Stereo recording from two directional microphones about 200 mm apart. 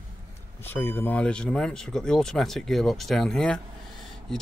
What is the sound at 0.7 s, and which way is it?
Speech, 10° left (ahead or behind).